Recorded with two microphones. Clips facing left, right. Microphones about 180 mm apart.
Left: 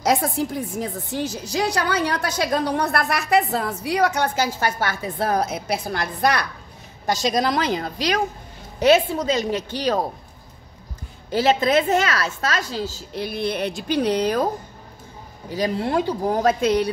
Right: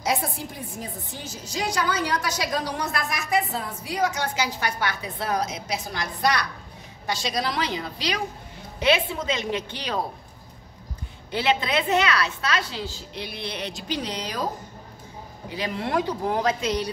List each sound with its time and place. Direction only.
0.0 s a woman's voice: 90° left; by 9.9 s 40° left (ahead or behind)
11.3 s a woman's voice: 45° left (ahead or behind)
15.5 s a woman's voice: 35° left (ahead or behind)
16.3 s a woman's voice: 55° left (ahead or behind)